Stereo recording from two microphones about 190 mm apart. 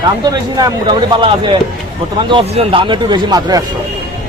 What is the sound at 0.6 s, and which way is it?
Speech, 25° right (ahead or behind).